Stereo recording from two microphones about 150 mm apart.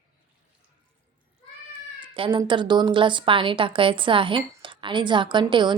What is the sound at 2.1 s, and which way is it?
A woman's voice, 35° right (ahead or behind).